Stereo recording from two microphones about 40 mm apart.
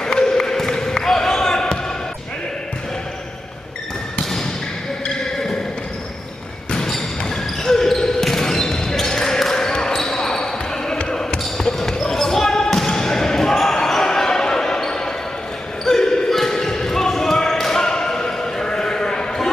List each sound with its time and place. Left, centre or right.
0.0 s basketball bounce: centre
4.2 s trickle: centre
5.0 s a sound: centre
7.6 s basketball bounce: centre
11.5 s basketball bounce: centre